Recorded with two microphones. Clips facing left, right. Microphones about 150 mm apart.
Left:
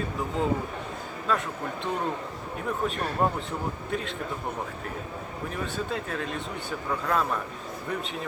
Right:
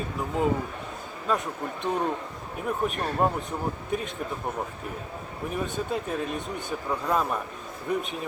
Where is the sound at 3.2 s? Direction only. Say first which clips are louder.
Right 1 dB; 15° right (ahead or behind).